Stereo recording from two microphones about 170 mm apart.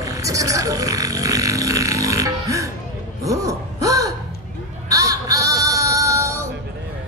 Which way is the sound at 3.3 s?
20° right (ahead or behind).